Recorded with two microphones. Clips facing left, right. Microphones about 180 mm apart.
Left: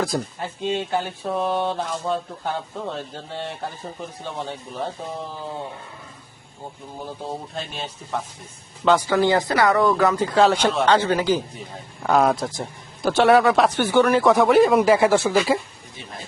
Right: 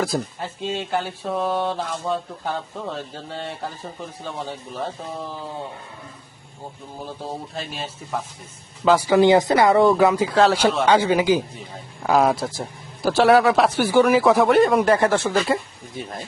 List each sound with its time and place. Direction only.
0.6 s a man's voice: centre (ahead or behind)
7.3 s a man's voice: centre (ahead or behind); by 10.1 s 20° right (ahead or behind)
10.1 s a man's voice: 5° right (ahead or behind)
10.8 s a man's voice: 10° right (ahead or behind); by 15.6 s 5° left (ahead or behind)